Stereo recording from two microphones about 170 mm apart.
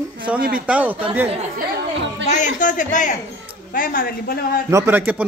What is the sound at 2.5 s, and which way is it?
A man's voice, 50° left (ahead or behind).